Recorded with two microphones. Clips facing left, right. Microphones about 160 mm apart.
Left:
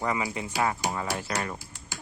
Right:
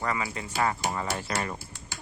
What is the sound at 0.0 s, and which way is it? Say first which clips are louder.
Speech: left 2 dB; 15° left (ahead or behind).